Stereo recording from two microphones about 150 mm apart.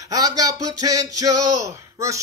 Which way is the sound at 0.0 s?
25° right (ahead or behind).